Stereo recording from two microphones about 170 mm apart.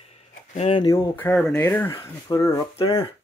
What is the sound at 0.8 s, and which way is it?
Speech, 25° left (ahead or behind).